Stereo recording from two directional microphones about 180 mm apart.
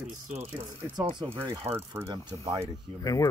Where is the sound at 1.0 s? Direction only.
30° right (ahead or behind).